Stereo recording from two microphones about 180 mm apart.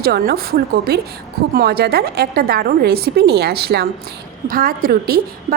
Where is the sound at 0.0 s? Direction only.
60° right (ahead or behind).